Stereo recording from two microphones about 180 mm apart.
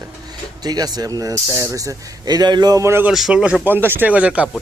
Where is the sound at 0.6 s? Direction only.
20° right (ahead or behind).